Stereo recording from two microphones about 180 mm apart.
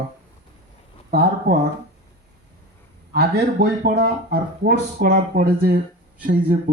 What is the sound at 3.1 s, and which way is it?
Speech, 60° right (ahead or behind).